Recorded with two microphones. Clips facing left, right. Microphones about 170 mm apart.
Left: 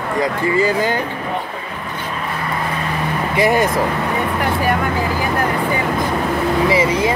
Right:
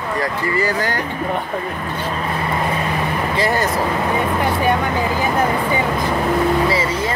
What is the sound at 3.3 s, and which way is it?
Speech, 15° left (ahead or behind).